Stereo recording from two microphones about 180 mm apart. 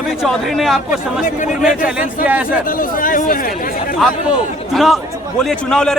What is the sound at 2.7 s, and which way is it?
Speech, 50° left (ahead or behind).